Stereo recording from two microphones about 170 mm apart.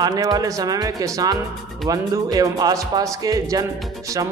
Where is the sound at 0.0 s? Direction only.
25° right (ahead or behind).